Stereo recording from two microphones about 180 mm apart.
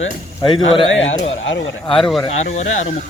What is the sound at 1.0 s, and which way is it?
Speech, 90° left.